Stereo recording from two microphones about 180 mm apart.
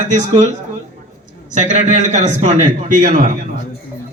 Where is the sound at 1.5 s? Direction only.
40° right (ahead or behind).